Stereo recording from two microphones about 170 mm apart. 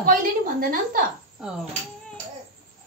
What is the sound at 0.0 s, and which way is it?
A woman's voice, 55° right (ahead or behind).